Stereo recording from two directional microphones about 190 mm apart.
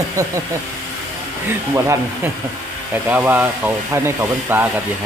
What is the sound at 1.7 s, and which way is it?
Speech, 15° right (ahead or behind).